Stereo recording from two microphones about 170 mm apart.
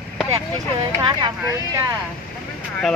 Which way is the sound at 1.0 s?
25° right (ahead or behind).